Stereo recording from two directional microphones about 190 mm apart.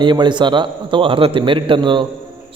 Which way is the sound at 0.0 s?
25° right (ahead or behind).